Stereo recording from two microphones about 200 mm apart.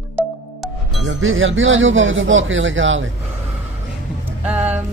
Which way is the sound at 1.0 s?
75° right (ahead or behind).